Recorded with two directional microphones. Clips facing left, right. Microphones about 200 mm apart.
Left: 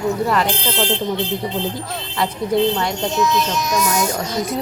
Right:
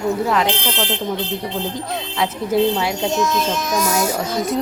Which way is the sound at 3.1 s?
45° right (ahead or behind).